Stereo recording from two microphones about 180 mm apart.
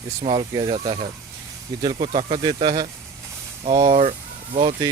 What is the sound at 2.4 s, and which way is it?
Speech, 25° right (ahead or behind).